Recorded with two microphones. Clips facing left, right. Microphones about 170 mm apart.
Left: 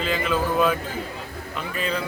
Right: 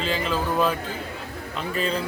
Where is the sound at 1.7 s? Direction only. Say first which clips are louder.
Right 1 dB; 35° right (ahead or behind).